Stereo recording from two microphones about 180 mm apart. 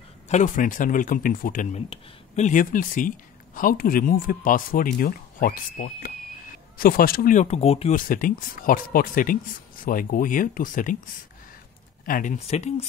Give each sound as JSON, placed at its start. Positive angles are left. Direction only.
{"t": 0.3, "sound": "speech", "side_deg": 45}
{"t": 7.4, "sound": "speech", "side_deg": 35}
{"t": 8.0, "sound": "speech", "side_deg": 50}
{"t": 12.1, "sound": "speech", "side_deg": 45}